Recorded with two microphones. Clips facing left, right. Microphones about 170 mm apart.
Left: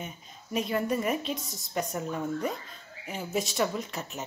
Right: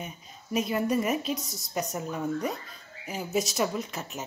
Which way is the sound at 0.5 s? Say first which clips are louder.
Right 2 dB; 15° right (ahead or behind).